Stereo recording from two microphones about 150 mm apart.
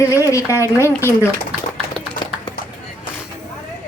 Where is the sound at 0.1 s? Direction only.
20° left (ahead or behind).